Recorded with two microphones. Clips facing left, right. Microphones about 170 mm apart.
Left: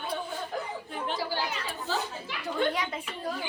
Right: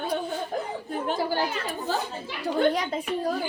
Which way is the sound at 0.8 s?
45° right (ahead or behind).